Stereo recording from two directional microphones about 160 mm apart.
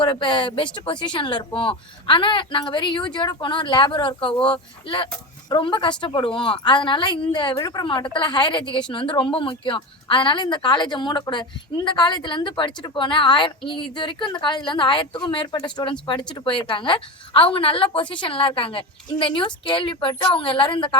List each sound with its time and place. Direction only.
0.0 s a woman's voice: 30° left (ahead or behind)